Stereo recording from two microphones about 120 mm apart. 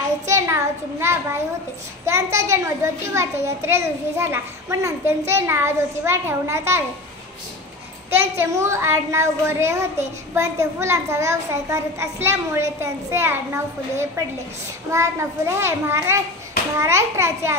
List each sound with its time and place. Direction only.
0.3 s a child's voice: 25° right (ahead or behind)
8.1 s a child's voice: 20° right (ahead or behind)